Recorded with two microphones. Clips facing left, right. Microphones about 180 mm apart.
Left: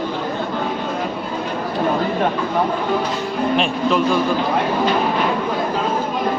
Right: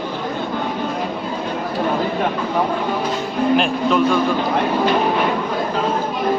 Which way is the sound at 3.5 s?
Centre (ahead or behind).